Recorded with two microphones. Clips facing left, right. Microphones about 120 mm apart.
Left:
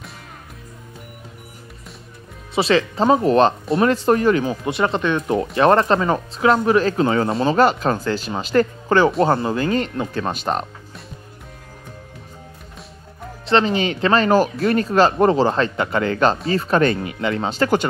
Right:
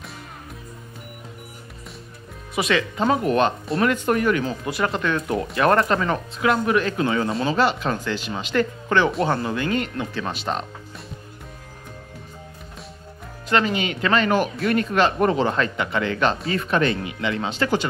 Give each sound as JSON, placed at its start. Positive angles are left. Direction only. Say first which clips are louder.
{"t": 2.5, "sound": "speech", "louder": "left 5 dB", "side_deg": 30}
{"t": 13.5, "sound": "speech", "louder": "left 4 dB", "side_deg": 30}